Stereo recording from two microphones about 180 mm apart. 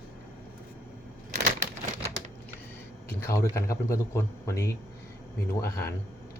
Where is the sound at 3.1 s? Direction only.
15° left (ahead or behind).